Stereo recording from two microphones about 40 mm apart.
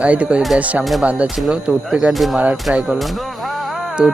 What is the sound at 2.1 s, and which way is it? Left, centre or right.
Speech, centre.